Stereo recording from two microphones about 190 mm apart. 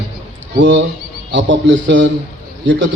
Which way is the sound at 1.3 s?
75° right (ahead or behind).